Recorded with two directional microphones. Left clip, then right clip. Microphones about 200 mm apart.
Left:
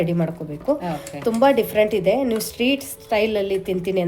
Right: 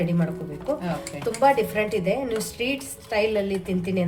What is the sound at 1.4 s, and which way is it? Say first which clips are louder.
A woman's voice: left 4 dB; 40° left (ahead or behind).